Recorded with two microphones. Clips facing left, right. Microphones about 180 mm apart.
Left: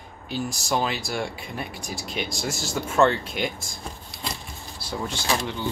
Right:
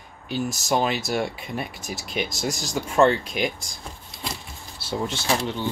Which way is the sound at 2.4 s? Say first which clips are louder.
Right 1 dB; 15° right (ahead or behind).